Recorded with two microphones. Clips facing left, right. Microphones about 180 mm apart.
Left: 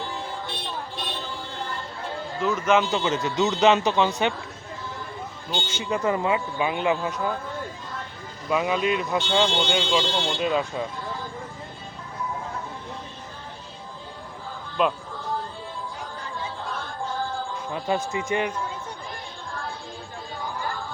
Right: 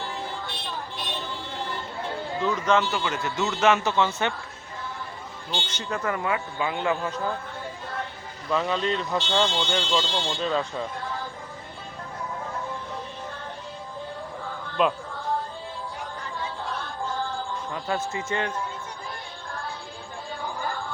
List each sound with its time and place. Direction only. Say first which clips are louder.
2.5 s speech: left 2 dB; 10° left (ahead or behind)
2.9 s speech: left 4 dB; 20° left (ahead or behind)
5.5 s speech: left 3 dB; 10° left (ahead or behind)
8.4 s speech: left 2 dB; 10° left (ahead or behind)
14.8 s speech: even; centre (ahead or behind)
17.7 s speech: left 4 dB; 20° left (ahead or behind)